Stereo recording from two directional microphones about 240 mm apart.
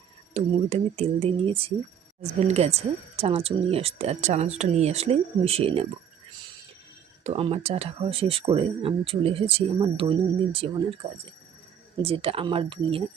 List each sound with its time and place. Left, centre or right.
0.3 s speech: right
7.3 s speech: right
12.0 s speech: right